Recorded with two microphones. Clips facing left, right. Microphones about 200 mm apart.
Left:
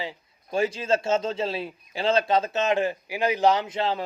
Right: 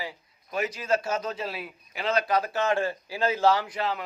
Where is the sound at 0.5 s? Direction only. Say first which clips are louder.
Left 3 dB; 30° left (ahead or behind).